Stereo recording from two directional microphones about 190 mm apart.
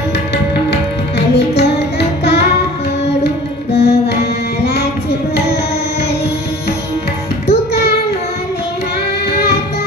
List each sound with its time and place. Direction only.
1.3 s music: 60° left (ahead or behind)